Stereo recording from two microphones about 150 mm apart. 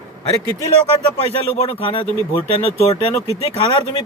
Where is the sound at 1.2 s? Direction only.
40° left (ahead or behind).